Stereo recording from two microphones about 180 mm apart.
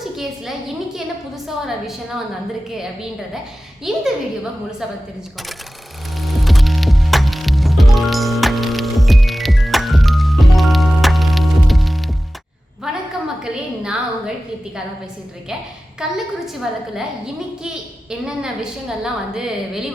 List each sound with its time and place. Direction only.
1.6 s a woman's voice: centre (ahead or behind)
3.9 s a woman's voice: centre (ahead or behind)
6.1 s music: centre (ahead or behind)
12.9 s a sound: 5° right (ahead or behind)
16.0 s a woman's voice: 5° right (ahead or behind)
18.1 s a woman's voice: 5° right (ahead or behind)